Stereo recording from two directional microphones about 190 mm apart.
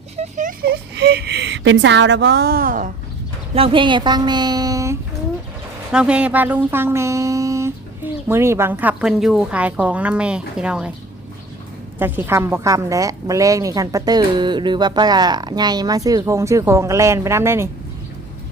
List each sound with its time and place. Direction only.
0.2 s speech: 40° right (ahead or behind)
3.5 s a woman's voice: 30° right (ahead or behind)
5.9 s a woman's voice: 5° right (ahead or behind)
11.9 s a woman's voice: 10° right (ahead or behind)